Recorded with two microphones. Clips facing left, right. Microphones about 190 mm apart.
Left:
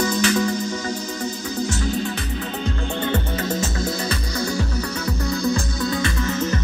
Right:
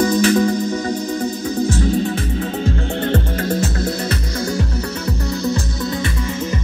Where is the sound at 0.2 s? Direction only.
40° right (ahead or behind).